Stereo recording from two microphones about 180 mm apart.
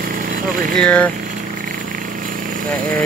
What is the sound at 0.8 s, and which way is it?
Speech, 5° left (ahead or behind).